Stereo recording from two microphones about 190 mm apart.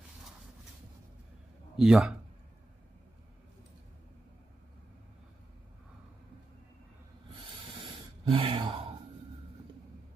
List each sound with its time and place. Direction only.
1.8 s a man's voice: centre (ahead or behind)
7.8 s gasp: 30° right (ahead or behind)